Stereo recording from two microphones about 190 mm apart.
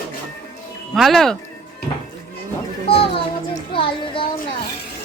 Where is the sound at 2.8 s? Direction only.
30° left (ahead or behind).